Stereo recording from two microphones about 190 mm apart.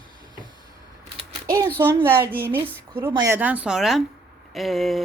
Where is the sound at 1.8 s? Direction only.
10° right (ahead or behind).